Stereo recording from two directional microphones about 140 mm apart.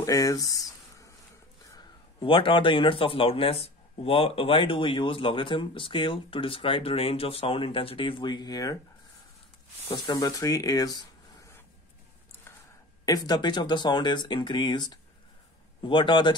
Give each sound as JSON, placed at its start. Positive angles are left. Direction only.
{"t": 0.0, "sound": "a sound", "side_deg": 25}
{"t": 1.7, "sound": "a man's voice", "side_deg": 30}
{"t": 9.8, "sound": "speech", "side_deg": 30}
{"t": 13.0, "sound": "a man's voice", "side_deg": 25}